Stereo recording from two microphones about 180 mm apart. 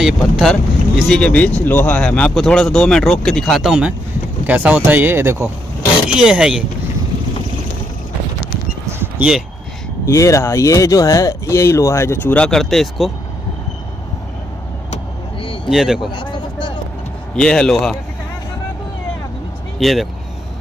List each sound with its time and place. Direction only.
0.0 s speech: centre (ahead or behind); by 5.5 s 15° right (ahead or behind)
6.0 s speech: 5° right (ahead or behind)
8.8 s a sound: 5° right (ahead or behind)
10.0 s speech: 15° left (ahead or behind); by 13.1 s centre (ahead or behind)
15.7 s speech: centre (ahead or behind)
17.4 s speech: 5° left (ahead or behind)
19.8 s speech: centre (ahead or behind)